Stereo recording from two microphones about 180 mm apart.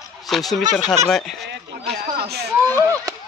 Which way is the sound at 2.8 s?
15° right (ahead or behind).